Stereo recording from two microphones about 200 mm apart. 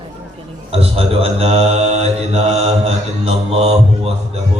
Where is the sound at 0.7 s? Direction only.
30° right (ahead or behind).